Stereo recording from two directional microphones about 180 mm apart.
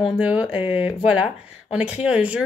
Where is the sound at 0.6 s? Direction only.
30° left (ahead or behind).